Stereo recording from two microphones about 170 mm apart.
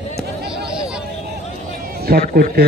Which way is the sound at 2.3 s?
60° right (ahead or behind).